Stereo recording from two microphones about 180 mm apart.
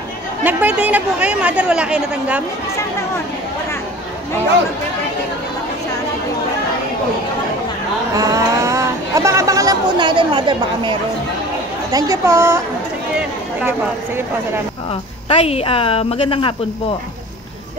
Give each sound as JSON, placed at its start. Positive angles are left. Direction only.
{"t": 0.4, "sound": "speech", "side_deg": -10}
{"t": 8.2, "sound": "speech", "side_deg": -20}
{"t": 15.2, "sound": "a woman's voice", "side_deg": 35}